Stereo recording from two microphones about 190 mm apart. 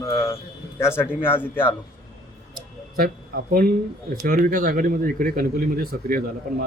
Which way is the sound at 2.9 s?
50° right (ahead or behind).